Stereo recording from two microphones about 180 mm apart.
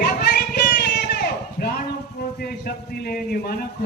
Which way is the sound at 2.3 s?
55° left (ahead or behind).